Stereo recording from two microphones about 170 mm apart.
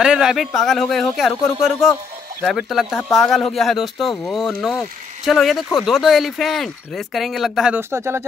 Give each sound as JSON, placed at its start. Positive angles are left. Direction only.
{"t": 0.0, "sound": "speech", "side_deg": -5}
{"t": 7.9, "sound": "speech", "side_deg": -15}